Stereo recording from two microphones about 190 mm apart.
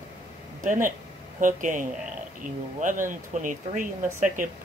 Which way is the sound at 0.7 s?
45° right (ahead or behind).